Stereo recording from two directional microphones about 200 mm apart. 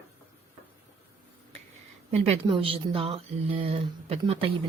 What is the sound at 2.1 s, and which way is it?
A woman's voice, 30° right (ahead or behind).